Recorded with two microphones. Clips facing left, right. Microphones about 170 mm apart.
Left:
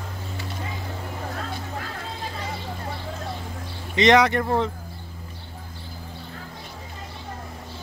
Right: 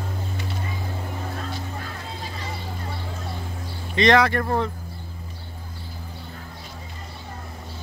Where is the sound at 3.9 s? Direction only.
20° left (ahead or behind).